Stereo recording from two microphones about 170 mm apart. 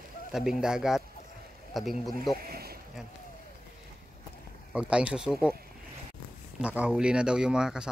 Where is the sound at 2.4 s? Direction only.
65° right (ahead or behind).